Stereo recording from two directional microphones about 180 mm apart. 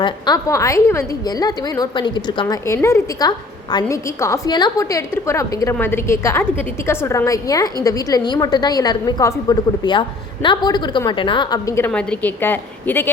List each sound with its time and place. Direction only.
0.0 s a woman's voice: 20° left (ahead or behind)
11.9 s a woman's voice: 5° left (ahead or behind)